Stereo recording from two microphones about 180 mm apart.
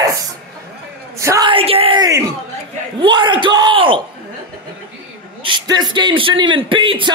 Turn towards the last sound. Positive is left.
turn(degrees=-25)  # may be behind; listen again after turning